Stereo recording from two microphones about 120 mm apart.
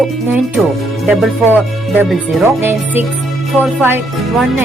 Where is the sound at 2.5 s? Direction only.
15° right (ahead or behind).